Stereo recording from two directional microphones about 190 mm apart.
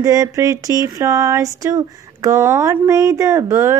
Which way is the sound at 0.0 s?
15° right (ahead or behind).